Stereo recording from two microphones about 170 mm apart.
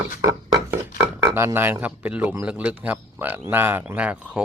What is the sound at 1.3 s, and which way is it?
Speech, 15° right (ahead or behind).